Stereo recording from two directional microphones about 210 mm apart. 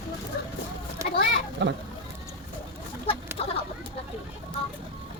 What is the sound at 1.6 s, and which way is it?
Speech, 55° right (ahead or behind).